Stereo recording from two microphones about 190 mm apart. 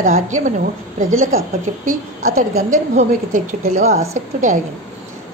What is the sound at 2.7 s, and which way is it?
A woman's voice, 40° right (ahead or behind).